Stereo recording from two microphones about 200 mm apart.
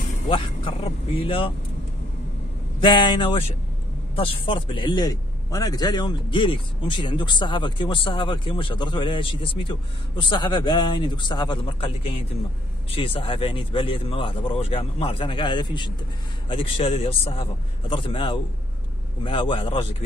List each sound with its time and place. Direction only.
0.3 s speech: 25° left (ahead or behind)
2.8 s a man's voice: 25° left (ahead or behind)